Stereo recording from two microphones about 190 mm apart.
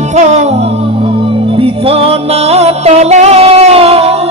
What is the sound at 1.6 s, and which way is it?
Music, 30° right (ahead or behind).